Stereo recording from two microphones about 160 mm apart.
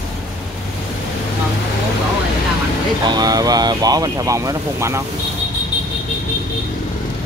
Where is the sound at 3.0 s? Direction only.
25° right (ahead or behind).